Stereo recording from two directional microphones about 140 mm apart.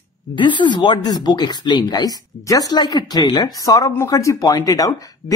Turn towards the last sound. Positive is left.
turn(degrees=25)  # may be behind; listen again after turning